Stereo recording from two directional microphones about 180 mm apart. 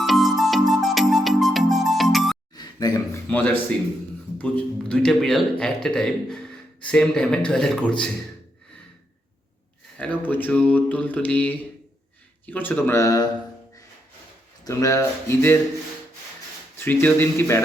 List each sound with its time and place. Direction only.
0.0 s music: centre (ahead or behind)
2.6 s a sound: 20° left (ahead or behind)
3.2 s speech: 10° left (ahead or behind)
10.0 s speech: 10° left (ahead or behind)
14.6 s speech: 20° left (ahead or behind)
16.7 s speech: 10° left (ahead or behind)